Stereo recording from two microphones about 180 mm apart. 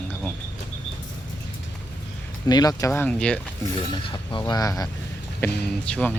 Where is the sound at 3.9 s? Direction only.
25° left (ahead or behind).